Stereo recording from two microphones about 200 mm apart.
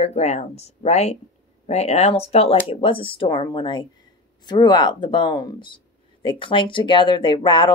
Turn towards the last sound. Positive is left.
turn(degrees=25)  # may be behind; listen again after turning